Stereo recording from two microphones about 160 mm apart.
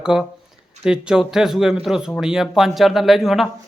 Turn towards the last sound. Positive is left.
turn(degrees=0)  # may be behind; listen again after turning